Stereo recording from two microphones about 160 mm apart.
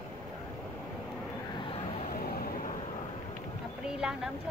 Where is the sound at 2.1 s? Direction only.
65° left (ahead or behind).